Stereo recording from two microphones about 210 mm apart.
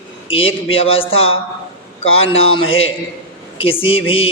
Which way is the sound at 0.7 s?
25° left (ahead or behind).